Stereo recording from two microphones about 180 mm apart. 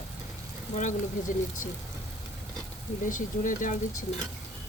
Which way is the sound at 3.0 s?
45° left (ahead or behind).